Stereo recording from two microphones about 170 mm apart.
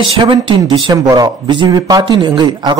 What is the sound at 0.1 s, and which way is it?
Speech, 30° right (ahead or behind).